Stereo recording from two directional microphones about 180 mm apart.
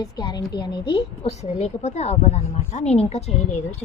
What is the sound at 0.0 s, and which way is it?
A woman's voice, 20° left (ahead or behind).